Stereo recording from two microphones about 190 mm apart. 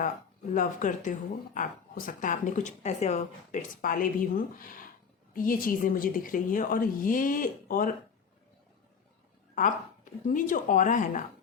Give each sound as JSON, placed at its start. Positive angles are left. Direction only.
{"t": 0.5, "sound": "a woman's voice", "side_deg": 45}
{"t": 9.6, "sound": "a woman's voice", "side_deg": 45}